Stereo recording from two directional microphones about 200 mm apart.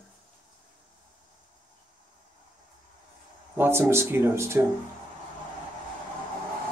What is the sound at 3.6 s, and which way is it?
Speech, 10° right (ahead or behind).